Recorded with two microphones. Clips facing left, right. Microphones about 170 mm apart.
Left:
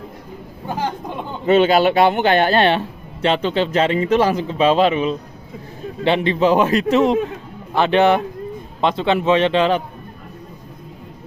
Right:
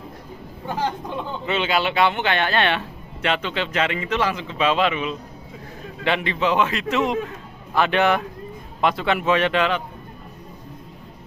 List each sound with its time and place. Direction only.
1.4 s a man's voice: 40° left (ahead or behind)